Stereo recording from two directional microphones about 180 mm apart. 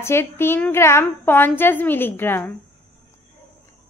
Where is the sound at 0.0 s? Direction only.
15° left (ahead or behind).